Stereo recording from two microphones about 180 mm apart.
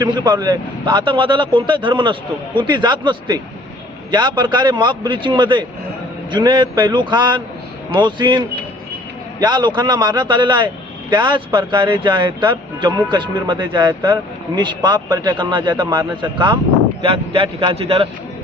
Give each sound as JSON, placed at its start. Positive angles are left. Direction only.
{"t": 0.0, "sound": "speech", "side_deg": -25}